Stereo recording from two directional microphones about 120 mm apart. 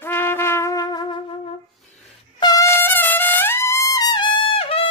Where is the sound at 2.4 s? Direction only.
30° left (ahead or behind).